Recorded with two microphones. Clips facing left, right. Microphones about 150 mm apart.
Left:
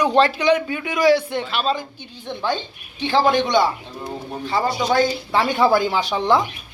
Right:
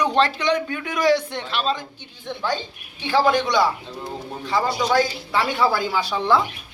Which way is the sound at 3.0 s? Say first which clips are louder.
Left 1 dB; 25° left (ahead or behind).